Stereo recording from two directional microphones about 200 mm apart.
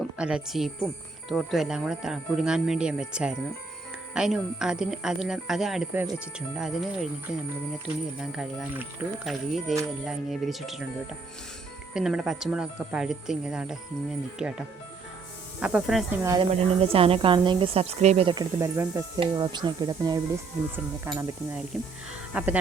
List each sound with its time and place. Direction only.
0.2 s speech: 5° right (ahead or behind)
8.2 s speech: 5° right (ahead or behind)
11.9 s speech: 5° right (ahead or behind)
15.6 s speech: 5° right (ahead or behind)
16.2 s speech: 15° right (ahead or behind)
16.5 s speech: 30° right (ahead or behind); by 22.5 s 10° right (ahead or behind)